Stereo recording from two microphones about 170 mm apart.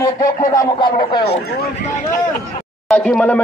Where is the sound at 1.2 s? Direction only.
70° left (ahead or behind).